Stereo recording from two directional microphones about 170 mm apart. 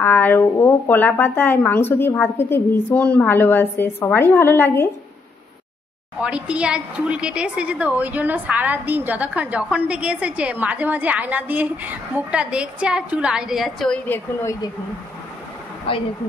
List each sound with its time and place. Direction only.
0.0 s speech: 10° left (ahead or behind)
6.2 s a woman's voice: 5° right (ahead or behind); by 14.7 s 15° left (ahead or behind)
15.9 s speech: 35° left (ahead or behind)